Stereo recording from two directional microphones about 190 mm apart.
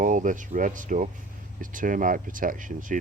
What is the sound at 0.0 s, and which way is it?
Speech, 45° right (ahead or behind).